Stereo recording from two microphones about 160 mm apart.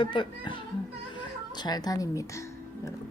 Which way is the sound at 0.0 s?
30° left (ahead or behind).